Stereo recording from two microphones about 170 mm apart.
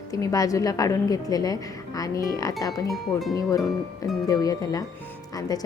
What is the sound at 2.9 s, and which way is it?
Speech, centre (ahead or behind).